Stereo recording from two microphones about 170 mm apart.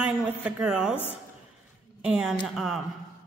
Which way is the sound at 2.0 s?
5° right (ahead or behind).